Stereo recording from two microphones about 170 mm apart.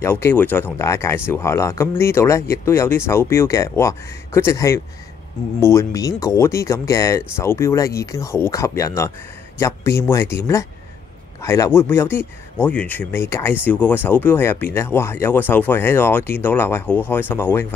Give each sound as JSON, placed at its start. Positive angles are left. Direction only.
{"t": 0.0, "sound": "speech", "side_deg": 15}